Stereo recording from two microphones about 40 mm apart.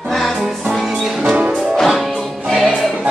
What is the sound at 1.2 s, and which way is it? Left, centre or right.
Music, right.